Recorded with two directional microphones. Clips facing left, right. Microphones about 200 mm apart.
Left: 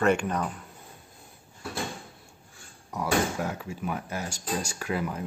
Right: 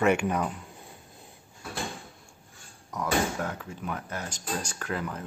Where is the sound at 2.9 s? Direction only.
10° left (ahead or behind).